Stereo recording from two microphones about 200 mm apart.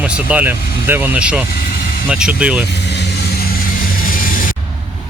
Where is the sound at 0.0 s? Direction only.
5° right (ahead or behind).